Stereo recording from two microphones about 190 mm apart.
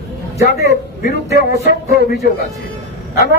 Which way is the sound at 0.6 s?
55° left (ahead or behind).